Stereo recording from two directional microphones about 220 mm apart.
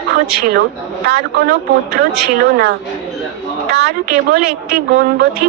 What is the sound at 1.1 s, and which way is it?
A woman's voice, 50° right (ahead or behind).